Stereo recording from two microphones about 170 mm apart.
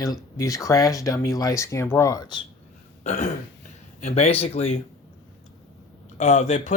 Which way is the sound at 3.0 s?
45° left (ahead or behind).